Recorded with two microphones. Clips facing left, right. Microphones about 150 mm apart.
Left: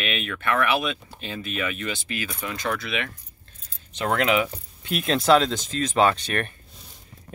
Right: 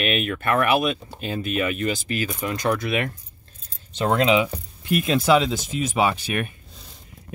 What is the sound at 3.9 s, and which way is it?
Speech, 25° right (ahead or behind).